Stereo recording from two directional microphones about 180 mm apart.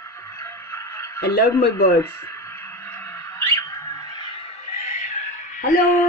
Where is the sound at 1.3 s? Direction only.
60° left (ahead or behind).